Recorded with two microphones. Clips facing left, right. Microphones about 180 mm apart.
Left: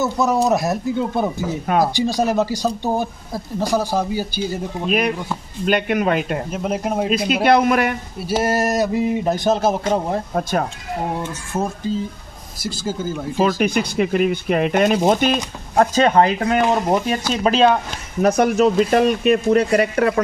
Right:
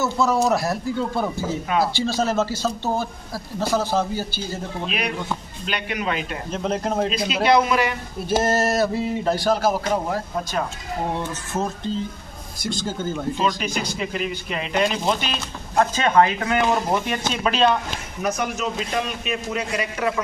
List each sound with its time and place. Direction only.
0.0 s a man's voice: 15° left (ahead or behind)
4.8 s speech: 45° left (ahead or behind)
6.5 s a man's voice: 10° left (ahead or behind)
7.4 s speech: 55° left (ahead or behind)
8.2 s a man's voice: 10° left (ahead or behind); by 10.2 s 25° left (ahead or behind)
11.5 s a man's voice: 5° left (ahead or behind)
13.4 s speech: 60° left (ahead or behind); by 17.6 s 40° left (ahead or behind)
18.2 s speech: 55° left (ahead or behind)